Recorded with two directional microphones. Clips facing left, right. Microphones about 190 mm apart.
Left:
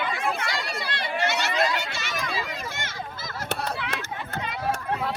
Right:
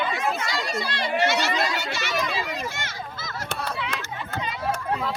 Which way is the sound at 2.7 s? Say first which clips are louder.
Even; 55° left (ahead or behind).